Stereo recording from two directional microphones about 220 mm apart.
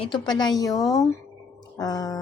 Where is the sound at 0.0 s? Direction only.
20° left (ahead or behind).